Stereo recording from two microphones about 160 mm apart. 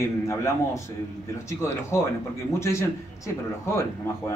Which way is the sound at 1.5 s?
15° left (ahead or behind).